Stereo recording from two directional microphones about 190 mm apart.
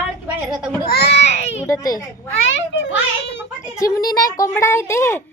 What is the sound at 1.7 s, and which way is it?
Speech, 20° left (ahead or behind).